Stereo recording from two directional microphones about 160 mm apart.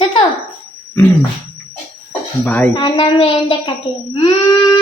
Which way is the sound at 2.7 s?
30° left (ahead or behind).